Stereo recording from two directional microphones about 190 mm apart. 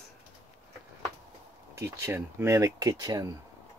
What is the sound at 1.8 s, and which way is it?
Speech, 15° right (ahead or behind).